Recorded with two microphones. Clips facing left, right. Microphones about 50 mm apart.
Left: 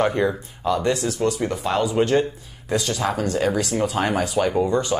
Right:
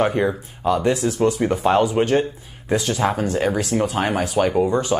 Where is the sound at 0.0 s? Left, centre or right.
Centre.